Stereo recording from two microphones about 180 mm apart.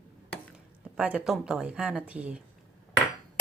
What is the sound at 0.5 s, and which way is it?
Speech, 5° right (ahead or behind).